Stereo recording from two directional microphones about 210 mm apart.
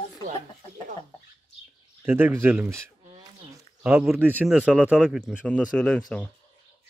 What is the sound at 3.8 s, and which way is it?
A man's voice, 5° right (ahead or behind).